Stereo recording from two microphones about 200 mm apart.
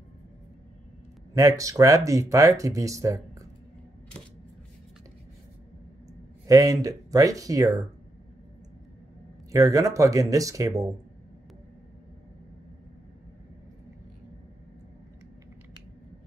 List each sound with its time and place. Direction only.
1.3 s speech: 15° right (ahead or behind)
6.4 s speech: 15° right (ahead or behind)
9.5 s speech: 15° right (ahead or behind)